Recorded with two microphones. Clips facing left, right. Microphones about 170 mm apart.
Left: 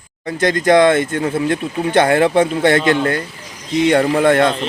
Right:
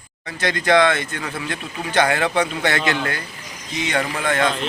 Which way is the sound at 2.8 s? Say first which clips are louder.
Left 7 dB; 30° left (ahead or behind).